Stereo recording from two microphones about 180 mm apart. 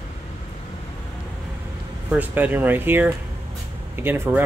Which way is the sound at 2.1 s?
10° right (ahead or behind).